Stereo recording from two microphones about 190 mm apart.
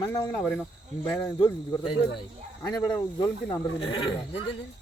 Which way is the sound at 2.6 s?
20° left (ahead or behind).